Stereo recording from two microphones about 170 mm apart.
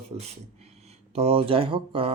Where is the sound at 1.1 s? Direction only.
35° right (ahead or behind).